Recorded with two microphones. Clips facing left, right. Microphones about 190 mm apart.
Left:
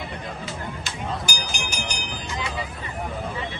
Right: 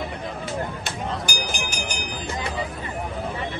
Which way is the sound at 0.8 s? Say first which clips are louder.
Right 1 dB; 55° right (ahead or behind).